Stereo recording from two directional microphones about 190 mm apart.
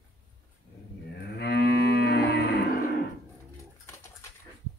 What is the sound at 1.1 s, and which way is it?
Moo, 60° left (ahead or behind).